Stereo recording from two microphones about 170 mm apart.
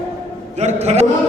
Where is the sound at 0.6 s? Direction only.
40° right (ahead or behind).